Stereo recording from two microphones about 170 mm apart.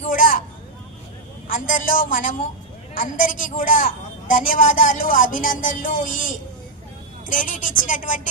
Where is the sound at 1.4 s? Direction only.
50° left (ahead or behind).